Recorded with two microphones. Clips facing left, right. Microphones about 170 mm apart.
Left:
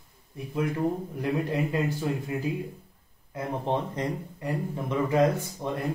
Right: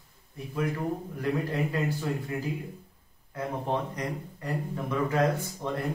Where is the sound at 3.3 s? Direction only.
25° left (ahead or behind).